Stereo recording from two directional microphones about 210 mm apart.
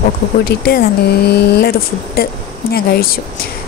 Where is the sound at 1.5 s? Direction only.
45° left (ahead or behind).